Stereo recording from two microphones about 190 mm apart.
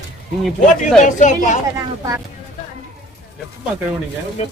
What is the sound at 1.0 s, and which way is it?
Speech, 40° left (ahead or behind).